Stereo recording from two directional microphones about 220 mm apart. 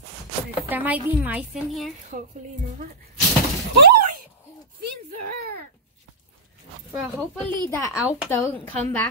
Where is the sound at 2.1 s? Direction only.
40° right (ahead or behind).